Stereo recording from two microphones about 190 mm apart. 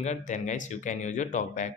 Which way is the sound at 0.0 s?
40° left (ahead or behind).